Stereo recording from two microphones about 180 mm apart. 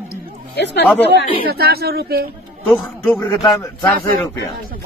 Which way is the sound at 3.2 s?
20° left (ahead or behind).